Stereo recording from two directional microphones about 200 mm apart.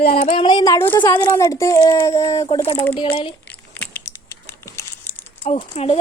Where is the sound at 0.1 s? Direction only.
30° left (ahead or behind).